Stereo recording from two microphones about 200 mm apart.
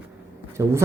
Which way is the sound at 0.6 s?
15° right (ahead or behind).